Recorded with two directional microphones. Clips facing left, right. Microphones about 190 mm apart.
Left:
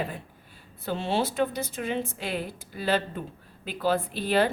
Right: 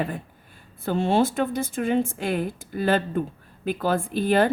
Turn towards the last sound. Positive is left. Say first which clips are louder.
# right 4 dB
turn(degrees=-50)  # may be behind; listen again after turning